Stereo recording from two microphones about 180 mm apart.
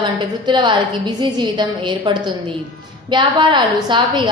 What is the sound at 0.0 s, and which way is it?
A woman's voice, 25° right (ahead or behind).